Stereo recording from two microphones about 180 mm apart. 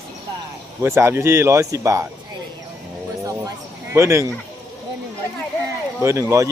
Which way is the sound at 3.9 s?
15° right (ahead or behind).